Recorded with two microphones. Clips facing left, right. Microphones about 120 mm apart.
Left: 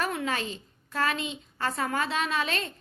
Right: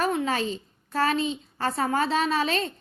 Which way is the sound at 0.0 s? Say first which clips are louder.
Right 5 dB; 30° right (ahead or behind).